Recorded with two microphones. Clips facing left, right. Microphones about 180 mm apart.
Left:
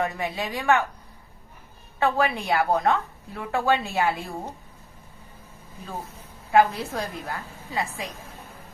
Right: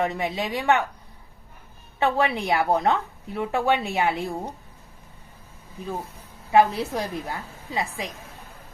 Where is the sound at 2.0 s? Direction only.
25° right (ahead or behind).